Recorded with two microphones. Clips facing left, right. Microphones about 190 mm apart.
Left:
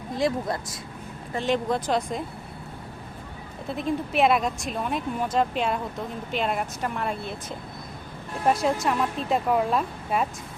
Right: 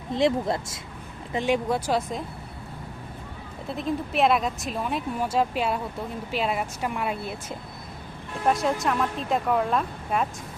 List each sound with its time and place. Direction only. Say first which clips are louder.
0.1 s speech: right 3 dB; 25° right (ahead or behind)
1.3 s speech: right 1 dB; 10° right (ahead or behind)
3.7 s speech: left 1 dB; centre (ahead or behind)